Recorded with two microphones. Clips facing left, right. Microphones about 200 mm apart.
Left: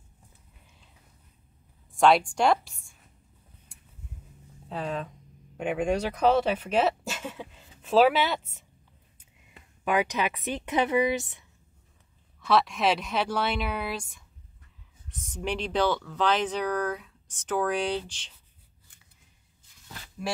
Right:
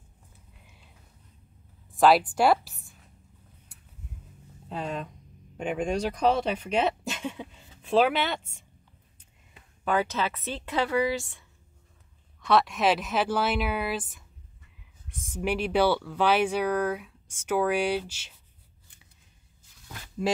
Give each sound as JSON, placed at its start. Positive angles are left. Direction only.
{"t": 2.0, "sound": "a woman's voice", "side_deg": -5}
{"t": 3.7, "sound": "vehicle", "side_deg": -5}
{"t": 4.6, "sound": "speech", "side_deg": 0}
{"t": 9.8, "sound": "speech", "side_deg": 15}
{"t": 12.4, "sound": "speech", "side_deg": 0}